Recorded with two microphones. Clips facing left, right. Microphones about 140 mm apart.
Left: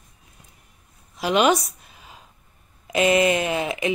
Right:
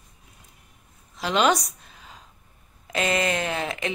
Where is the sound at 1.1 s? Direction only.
10° left (ahead or behind).